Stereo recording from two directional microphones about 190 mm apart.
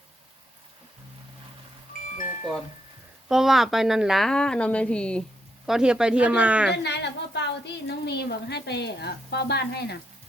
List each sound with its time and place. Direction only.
3.2 s a woman's voice: centre (ahead or behind)
6.8 s a woman's voice: 65° left (ahead or behind)